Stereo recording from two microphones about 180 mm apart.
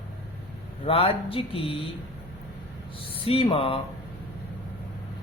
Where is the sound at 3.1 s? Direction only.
30° left (ahead or behind).